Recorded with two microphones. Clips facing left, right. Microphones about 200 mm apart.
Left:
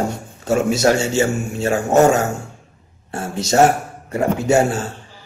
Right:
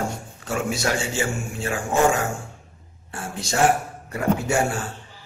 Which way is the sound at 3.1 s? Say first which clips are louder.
Left 7 dB; 40° left (ahead or behind).